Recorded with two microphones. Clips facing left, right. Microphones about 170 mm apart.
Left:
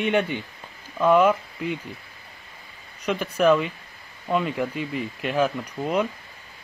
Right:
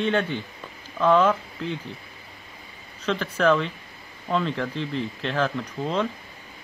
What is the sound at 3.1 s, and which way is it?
Speech, 10° left (ahead or behind).